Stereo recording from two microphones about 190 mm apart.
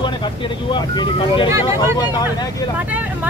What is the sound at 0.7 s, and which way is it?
Speech, 25° left (ahead or behind).